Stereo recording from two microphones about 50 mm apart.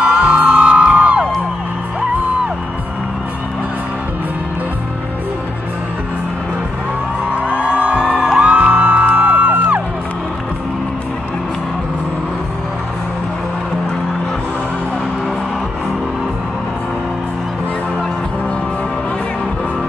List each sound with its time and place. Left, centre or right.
0.0 s music: centre
7.5 s music: right